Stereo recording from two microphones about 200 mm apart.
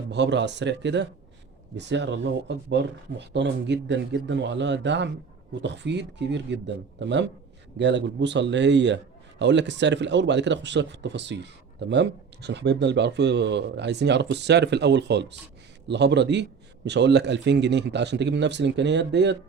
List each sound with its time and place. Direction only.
0.1 s speech: 60° right (ahead or behind)